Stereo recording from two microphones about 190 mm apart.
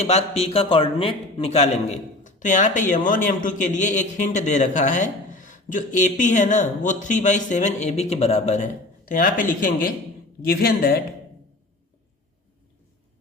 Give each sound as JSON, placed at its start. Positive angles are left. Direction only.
{"t": 0.0, "sound": "a man's voice", "side_deg": 35}